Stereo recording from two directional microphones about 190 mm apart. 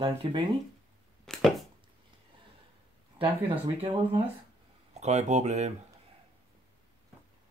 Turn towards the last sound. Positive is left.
turn(degrees=-35)  # may be behind; listen again after turning